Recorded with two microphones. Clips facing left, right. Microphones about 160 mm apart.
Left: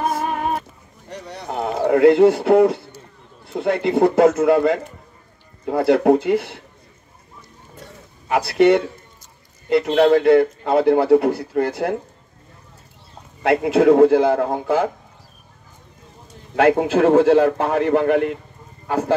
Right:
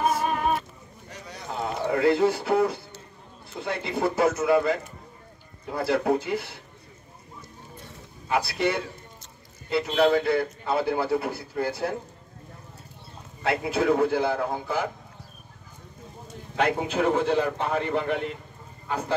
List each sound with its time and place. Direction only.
0.1 s a sound: 50° left (ahead or behind)
1.1 s a sound: 65° left (ahead or behind); by 2.8 s 90° left
3.5 s a man's voice: 90° left
8.3 s a man's voice: 75° left (ahead or behind)
9.7 s a man's voice: 90° left
13.4 s a man's voice: 85° left
16.9 s a man's voice: 75° left (ahead or behind)
18.9 s speech: 90° left